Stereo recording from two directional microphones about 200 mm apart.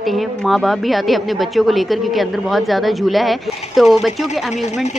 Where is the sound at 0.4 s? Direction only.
Centre (ahead or behind).